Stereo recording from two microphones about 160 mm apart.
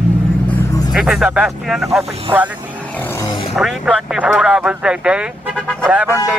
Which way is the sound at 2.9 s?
10° left (ahead or behind).